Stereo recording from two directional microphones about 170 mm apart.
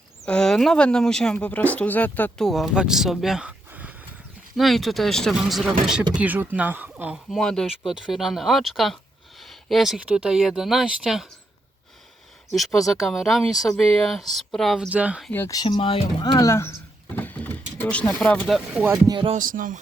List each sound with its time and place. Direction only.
0.3 s speech: 5° left (ahead or behind)
12.5 s speech: centre (ahead or behind)
15.3 s speech: 15° left (ahead or behind); by 18.9 s centre (ahead or behind)
18.9 s speech: 25° right (ahead or behind)
19.3 s music: 55° right (ahead or behind)